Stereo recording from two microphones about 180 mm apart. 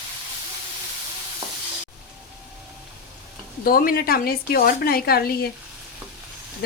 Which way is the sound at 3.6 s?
55° left (ahead or behind).